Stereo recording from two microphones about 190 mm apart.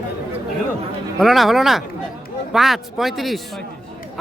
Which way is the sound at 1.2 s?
Centre (ahead or behind).